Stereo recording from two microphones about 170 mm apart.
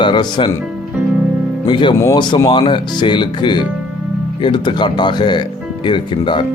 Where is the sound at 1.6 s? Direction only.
30° left (ahead or behind).